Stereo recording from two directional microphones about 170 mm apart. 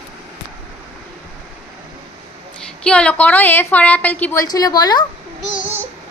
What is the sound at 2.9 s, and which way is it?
A woman's voice, 5° left (ahead or behind).